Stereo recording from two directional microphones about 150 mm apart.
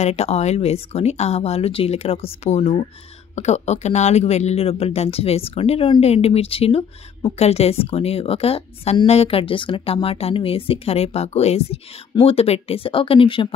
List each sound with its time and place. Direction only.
0.0 s speech: 45° left (ahead or behind)